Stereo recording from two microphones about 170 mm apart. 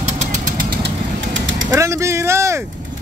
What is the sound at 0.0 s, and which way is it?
Vehicle, 45° right (ahead or behind).